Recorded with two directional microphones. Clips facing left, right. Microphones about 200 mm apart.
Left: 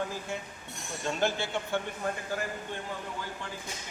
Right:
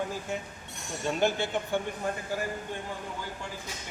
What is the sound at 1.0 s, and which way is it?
Speech, 15° right (ahead or behind).